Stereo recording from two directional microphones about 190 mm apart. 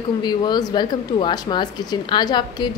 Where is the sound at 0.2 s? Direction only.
20° left (ahead or behind).